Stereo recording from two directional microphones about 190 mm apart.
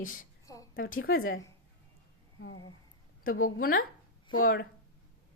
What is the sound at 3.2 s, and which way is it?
Speech, 50° left (ahead or behind).